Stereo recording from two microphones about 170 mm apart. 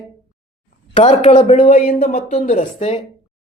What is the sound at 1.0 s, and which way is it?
Speech, 40° left (ahead or behind).